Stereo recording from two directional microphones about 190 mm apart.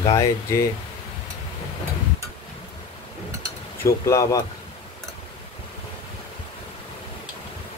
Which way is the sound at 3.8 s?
15° left (ahead or behind).